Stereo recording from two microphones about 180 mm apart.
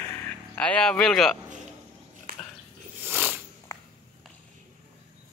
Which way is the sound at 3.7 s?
15° left (ahead or behind).